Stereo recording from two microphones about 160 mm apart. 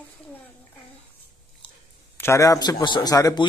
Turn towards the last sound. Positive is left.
turn(degrees=20)  # may be behind; listen again after turning